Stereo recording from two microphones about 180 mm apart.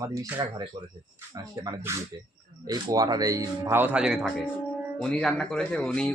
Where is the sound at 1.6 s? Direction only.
20° right (ahead or behind).